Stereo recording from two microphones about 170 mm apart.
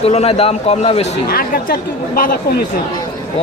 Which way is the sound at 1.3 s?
60° left (ahead or behind).